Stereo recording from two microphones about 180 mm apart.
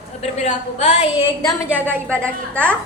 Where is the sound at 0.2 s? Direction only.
40° left (ahead or behind).